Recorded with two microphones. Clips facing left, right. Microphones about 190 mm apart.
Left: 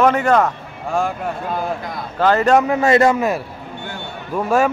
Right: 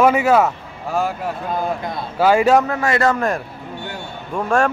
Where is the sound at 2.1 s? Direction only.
10° right (ahead or behind).